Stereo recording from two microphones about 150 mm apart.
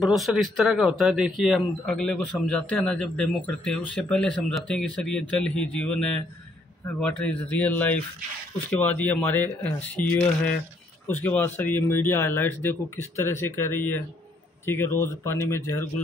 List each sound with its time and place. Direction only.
0.0 s speech: centre (ahead or behind)
6.9 s speech: 10° left (ahead or behind)